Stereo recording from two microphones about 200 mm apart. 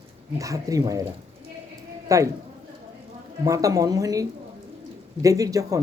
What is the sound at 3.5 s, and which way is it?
Speech, 15° right (ahead or behind).